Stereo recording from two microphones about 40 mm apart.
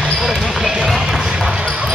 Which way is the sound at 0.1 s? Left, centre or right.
Centre.